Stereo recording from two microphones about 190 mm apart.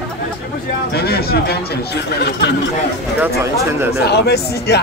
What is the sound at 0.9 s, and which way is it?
Speech, 55° left (ahead or behind).